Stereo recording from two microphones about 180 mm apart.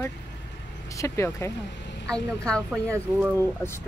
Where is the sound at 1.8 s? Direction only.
75° left (ahead or behind).